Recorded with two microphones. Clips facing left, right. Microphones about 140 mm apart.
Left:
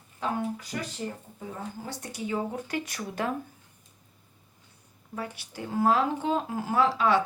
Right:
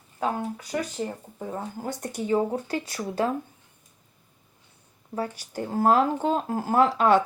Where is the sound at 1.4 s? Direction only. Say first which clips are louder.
Right 6 dB; 50° right (ahead or behind).